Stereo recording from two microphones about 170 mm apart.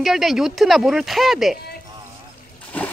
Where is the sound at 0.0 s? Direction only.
Centre (ahead or behind).